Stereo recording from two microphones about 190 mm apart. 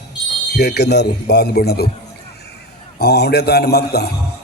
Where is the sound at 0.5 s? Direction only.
60° left (ahead or behind).